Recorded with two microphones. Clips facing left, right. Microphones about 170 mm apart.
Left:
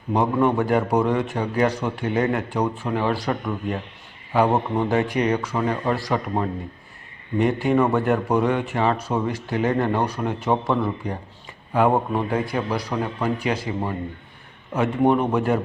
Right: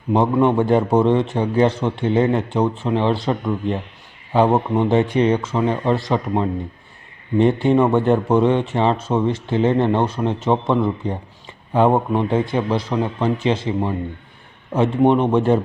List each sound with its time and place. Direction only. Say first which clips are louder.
0.4 s speech: right 4 dB; 25° right (ahead or behind)